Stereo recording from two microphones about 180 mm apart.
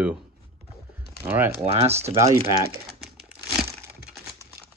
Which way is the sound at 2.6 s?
60° right (ahead or behind).